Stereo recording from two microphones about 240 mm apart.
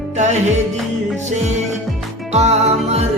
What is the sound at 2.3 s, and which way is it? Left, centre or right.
Music, right.